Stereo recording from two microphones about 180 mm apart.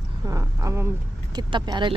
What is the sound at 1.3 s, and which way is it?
Speech, 25° right (ahead or behind).